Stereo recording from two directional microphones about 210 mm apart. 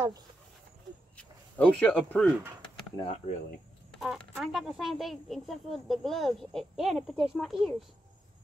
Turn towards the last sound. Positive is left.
turn(degrees=0)  # may be behind; listen again after turning